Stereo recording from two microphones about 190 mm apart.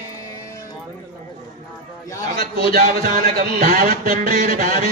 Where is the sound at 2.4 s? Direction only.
50° right (ahead or behind).